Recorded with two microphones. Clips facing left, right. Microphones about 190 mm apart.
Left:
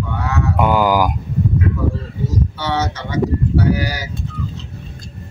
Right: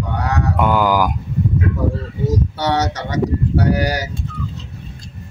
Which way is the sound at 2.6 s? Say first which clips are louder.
Right 2 dB; 40° right (ahead or behind).